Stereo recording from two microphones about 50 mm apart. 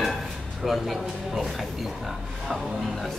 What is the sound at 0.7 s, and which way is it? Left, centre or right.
Speech, centre.